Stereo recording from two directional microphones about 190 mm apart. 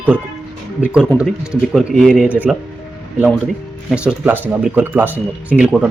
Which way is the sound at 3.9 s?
5° right (ahead or behind).